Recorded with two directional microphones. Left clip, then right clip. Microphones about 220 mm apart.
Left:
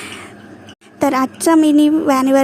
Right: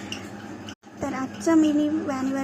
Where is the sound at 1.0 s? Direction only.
50° left (ahead or behind).